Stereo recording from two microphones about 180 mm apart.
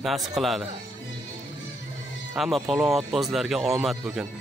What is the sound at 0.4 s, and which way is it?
Speech, centre (ahead or behind).